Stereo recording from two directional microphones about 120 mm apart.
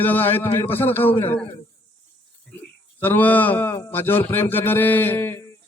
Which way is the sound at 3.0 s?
15° left (ahead or behind).